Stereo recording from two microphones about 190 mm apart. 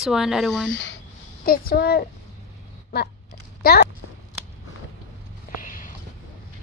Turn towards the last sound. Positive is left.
turn(degrees=45)  # may be behind; listen again after turning